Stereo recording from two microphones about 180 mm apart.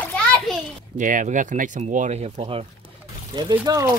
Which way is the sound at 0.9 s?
45° right (ahead or behind).